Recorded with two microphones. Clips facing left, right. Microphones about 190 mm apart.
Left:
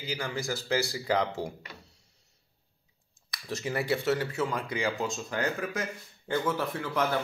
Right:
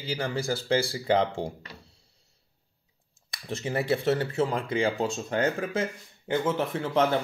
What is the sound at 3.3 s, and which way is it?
Speech, 25° right (ahead or behind).